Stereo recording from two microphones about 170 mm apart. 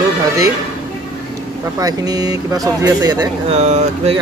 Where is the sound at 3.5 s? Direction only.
40° right (ahead or behind).